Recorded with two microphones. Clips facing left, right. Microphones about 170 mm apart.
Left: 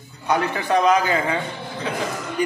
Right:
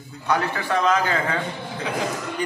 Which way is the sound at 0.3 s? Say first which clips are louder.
Left 3 dB; 20° left (ahead or behind).